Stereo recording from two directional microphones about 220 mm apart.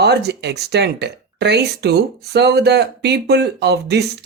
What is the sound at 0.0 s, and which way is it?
Speech, 50° right (ahead or behind).